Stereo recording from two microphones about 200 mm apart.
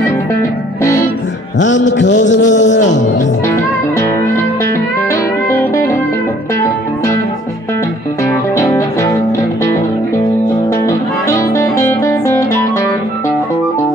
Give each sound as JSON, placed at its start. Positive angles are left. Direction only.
{"t": 0.4, "sound": "music", "side_deg": 15}
{"t": 1.6, "sound": "a man's voice", "side_deg": 65}
{"t": 5.1, "sound": "music", "side_deg": 15}
{"t": 8.2, "sound": "music", "side_deg": 15}
{"t": 10.7, "sound": "music", "side_deg": 15}